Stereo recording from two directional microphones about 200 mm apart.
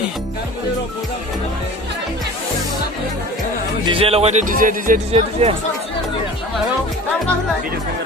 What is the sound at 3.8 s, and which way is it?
Speech, 25° right (ahead or behind).